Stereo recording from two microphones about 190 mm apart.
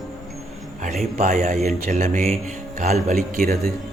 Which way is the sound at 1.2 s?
35° right (ahead or behind).